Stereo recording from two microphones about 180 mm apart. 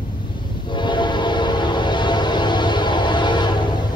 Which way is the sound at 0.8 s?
25° left (ahead or behind).